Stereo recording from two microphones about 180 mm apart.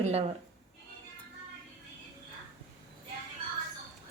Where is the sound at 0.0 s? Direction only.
35° right (ahead or behind).